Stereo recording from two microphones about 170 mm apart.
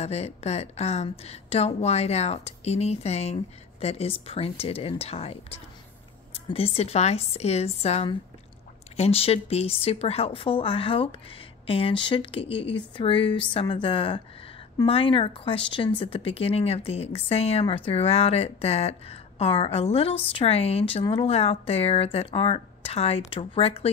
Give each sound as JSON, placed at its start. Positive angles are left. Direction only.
{"t": 0.0, "sound": "speech", "side_deg": 40}